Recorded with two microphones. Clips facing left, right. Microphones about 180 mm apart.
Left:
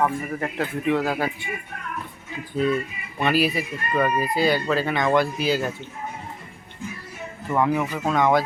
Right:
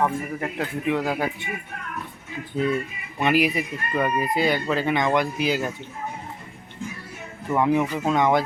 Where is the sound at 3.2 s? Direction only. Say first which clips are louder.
Right 1 dB; 15° right (ahead or behind).